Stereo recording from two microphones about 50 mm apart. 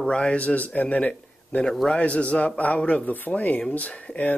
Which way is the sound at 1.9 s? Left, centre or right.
Left.